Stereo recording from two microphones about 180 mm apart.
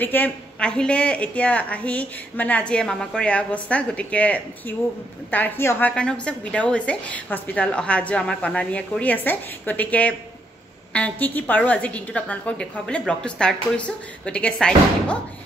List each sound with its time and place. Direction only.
0.0 s a woman's voice: 10° left (ahead or behind)